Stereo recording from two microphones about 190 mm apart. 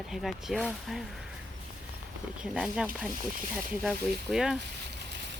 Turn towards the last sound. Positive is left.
turn(degrees=0)  # may be behind; listen again after turning